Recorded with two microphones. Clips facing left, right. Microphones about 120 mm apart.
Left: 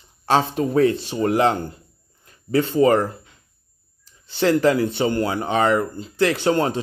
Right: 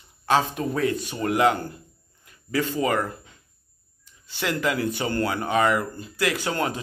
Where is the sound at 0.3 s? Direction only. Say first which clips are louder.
Left 4 dB; 30° left (ahead or behind).